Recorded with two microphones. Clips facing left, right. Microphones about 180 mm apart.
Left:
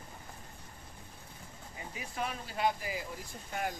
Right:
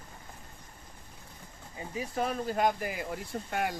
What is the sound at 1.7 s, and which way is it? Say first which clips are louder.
Speech: right 7 dB; 35° right (ahead or behind).